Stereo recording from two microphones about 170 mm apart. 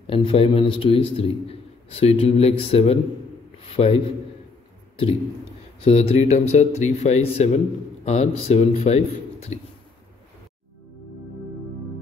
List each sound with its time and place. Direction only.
0.0 s speech: 35° left (ahead or behind)
5.9 s speech: 40° left (ahead or behind)